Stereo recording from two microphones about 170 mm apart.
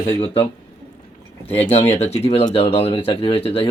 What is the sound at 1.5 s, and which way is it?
Speech, 35° left (ahead or behind).